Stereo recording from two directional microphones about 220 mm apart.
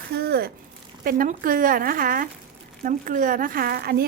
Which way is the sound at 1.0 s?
40° right (ahead or behind).